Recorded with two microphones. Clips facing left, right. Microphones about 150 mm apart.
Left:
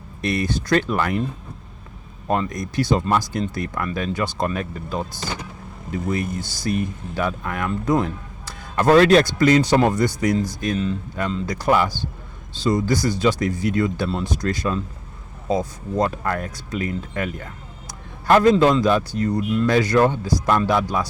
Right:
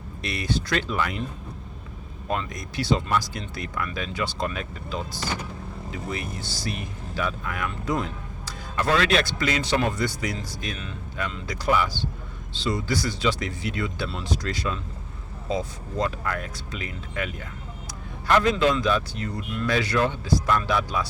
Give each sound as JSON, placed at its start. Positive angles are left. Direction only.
{"t": 0.2, "sound": "speech", "side_deg": 50}
{"t": 2.2, "sound": "speech", "side_deg": 45}
{"t": 10.8, "sound": "speech", "side_deg": 35}
{"t": 11.5, "sound": "speech", "side_deg": 50}